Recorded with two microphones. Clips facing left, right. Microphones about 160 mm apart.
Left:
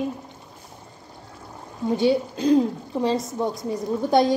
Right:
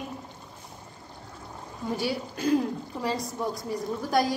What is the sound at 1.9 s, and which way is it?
A woman's voice, 20° left (ahead or behind).